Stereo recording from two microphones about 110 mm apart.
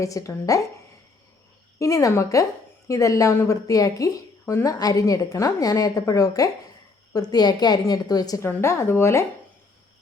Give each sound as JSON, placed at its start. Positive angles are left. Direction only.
{"t": 0.0, "sound": "a woman's voice", "side_deg": 30}
{"t": 1.8, "sound": "a woman's voice", "side_deg": 30}
{"t": 8.4, "sound": "a woman's voice", "side_deg": 25}